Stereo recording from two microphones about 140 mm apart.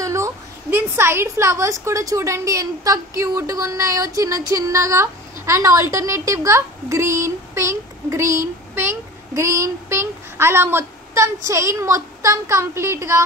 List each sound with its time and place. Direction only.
0.0 s a woman's voice: 20° right (ahead or behind)